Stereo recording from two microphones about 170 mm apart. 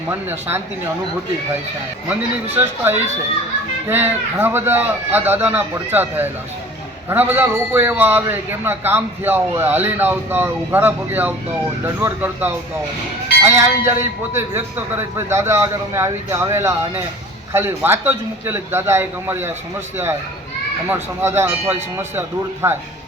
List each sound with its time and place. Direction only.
0.1 s a man's voice: 15° right (ahead or behind)
2.0 s a man's voice: 10° right (ahead or behind)
20.9 s a man's voice: 15° right (ahead or behind)